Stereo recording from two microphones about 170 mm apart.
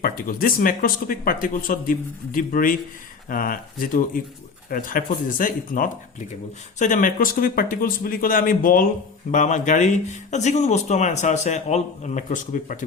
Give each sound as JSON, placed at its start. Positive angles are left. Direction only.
{"t": 0.0, "sound": "speech", "side_deg": 55}